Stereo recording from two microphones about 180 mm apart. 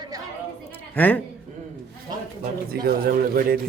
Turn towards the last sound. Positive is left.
turn(degrees=-55)  # may be behind; listen again after turning